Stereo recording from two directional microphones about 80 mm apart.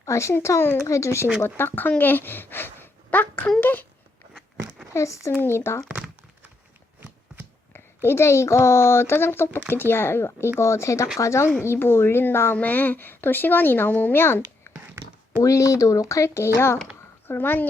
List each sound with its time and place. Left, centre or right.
0.0 s a sound: left
0.3 s speech: left
4.9 s speech: left
7.7 s speech: left
15.4 s speech: left